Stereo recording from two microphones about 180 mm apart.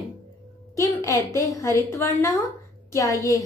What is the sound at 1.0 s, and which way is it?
A woman's voice, 15° left (ahead or behind).